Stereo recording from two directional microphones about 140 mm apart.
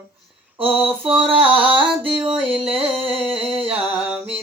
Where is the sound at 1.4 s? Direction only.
35° right (ahead or behind).